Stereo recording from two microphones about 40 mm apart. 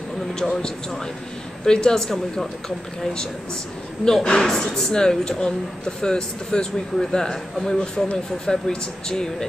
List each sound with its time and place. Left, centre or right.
0.3 s speech: centre
4.0 s speech: centre